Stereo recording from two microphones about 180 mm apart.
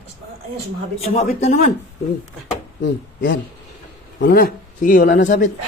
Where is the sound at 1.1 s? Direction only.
35° left (ahead or behind).